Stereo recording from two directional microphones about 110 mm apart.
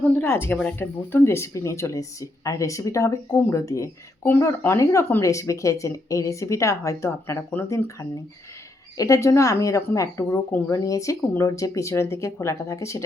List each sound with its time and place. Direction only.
0.2 s speech: 20° left (ahead or behind)